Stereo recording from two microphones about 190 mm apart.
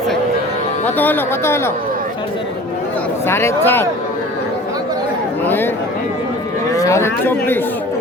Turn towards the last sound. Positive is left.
turn(degrees=10)  # may be behind; listen again after turning